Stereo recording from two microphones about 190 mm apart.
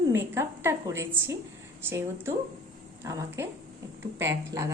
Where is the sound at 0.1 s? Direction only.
15° right (ahead or behind).